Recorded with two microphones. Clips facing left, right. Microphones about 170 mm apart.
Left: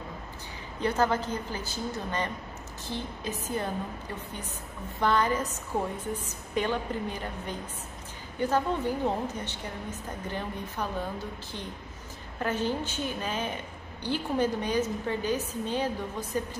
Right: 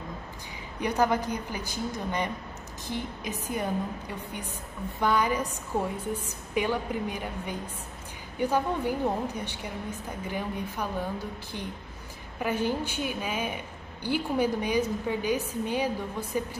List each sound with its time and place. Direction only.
0.7 s a woman's voice: 15° right (ahead or behind)
5.0 s a woman's voice: 10° right (ahead or behind)
12.4 s a woman's voice: 10° right (ahead or behind)